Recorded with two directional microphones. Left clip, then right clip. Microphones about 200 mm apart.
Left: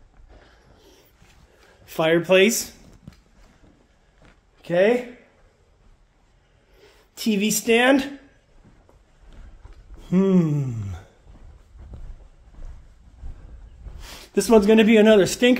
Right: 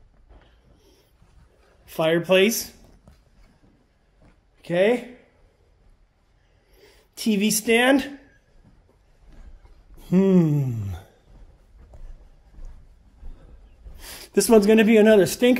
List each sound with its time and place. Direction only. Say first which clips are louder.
0.7 s a sound: left 4 dB; 20° left (ahead or behind)
1.9 s speech: left 2 dB; centre (ahead or behind)
4.6 s speech: left 2 dB; centre (ahead or behind)
6.7 s a sound: left 1 dB; 15° right (ahead or behind)
9.9 s speech: right 1 dB; 25° right (ahead or behind)
13.9 s speech: right 2 dB; 25° right (ahead or behind)